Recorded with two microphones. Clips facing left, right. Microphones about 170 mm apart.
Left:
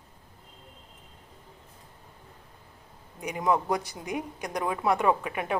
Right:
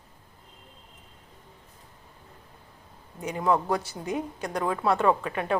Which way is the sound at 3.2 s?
15° left (ahead or behind).